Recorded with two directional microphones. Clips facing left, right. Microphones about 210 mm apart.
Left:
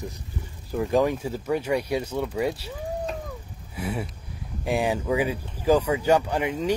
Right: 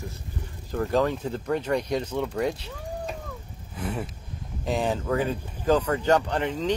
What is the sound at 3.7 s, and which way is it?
Speech, 10° left (ahead or behind).